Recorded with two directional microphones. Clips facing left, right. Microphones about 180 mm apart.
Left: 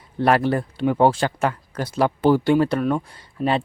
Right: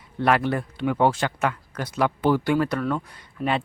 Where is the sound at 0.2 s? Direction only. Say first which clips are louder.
Left 3 dB; 35° left (ahead or behind).